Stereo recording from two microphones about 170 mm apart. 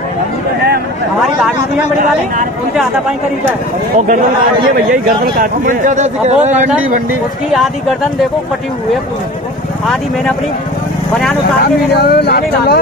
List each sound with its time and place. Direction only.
4.7 s a man's voice: 60° right (ahead or behind); by 6.7 s 40° right (ahead or behind)
11.5 s speech: 65° left (ahead or behind)